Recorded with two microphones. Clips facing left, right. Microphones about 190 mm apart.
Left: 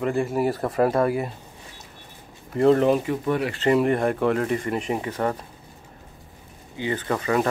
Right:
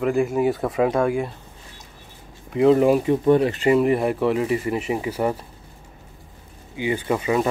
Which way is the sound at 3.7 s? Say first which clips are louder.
Left 1 dB; 5° right (ahead or behind).